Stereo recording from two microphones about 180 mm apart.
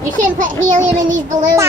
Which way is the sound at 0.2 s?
45° right (ahead or behind).